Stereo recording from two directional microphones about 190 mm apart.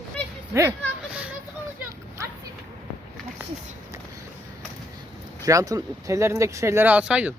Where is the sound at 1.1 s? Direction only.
5° right (ahead or behind).